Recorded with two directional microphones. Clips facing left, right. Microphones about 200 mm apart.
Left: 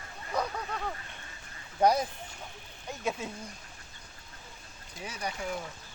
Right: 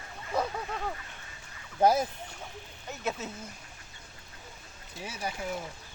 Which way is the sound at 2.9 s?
15° left (ahead or behind).